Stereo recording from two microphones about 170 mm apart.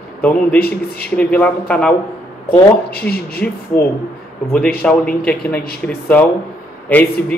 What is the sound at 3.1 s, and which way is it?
Speech, 70° left (ahead or behind).